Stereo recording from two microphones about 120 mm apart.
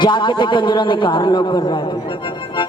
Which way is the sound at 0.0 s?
40° left (ahead or behind).